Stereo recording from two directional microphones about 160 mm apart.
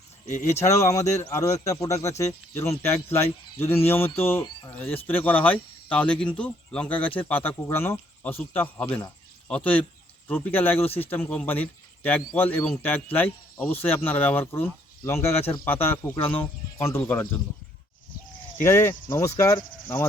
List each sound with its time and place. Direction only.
0.3 s speech: 45° left (ahead or behind)
0.9 s speech: 20° left (ahead or behind)
10.2 s speech: 10° left (ahead or behind)
18.6 s speech: 15° left (ahead or behind)